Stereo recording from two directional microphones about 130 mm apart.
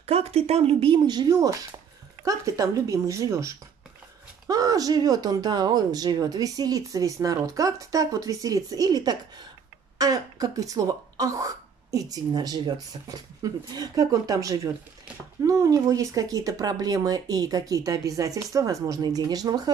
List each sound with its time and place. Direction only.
0.0 s speech: 50° right (ahead or behind); by 19.7 s 30° right (ahead or behind)